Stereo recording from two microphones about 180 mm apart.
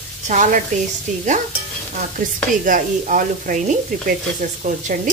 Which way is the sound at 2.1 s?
50° right (ahead or behind).